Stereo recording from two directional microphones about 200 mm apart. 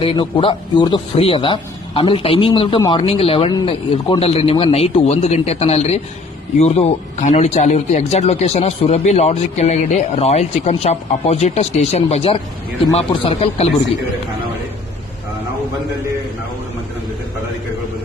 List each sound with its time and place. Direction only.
0.0 s speech: 25° left (ahead or behind)